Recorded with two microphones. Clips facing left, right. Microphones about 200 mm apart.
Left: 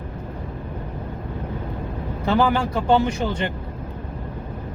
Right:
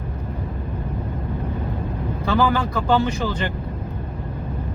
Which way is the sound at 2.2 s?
25° left (ahead or behind).